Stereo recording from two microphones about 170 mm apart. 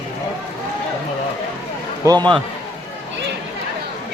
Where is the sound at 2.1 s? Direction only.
25° right (ahead or behind).